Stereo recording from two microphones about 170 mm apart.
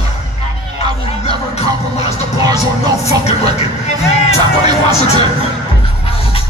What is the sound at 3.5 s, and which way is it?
Music, 40° left (ahead or behind).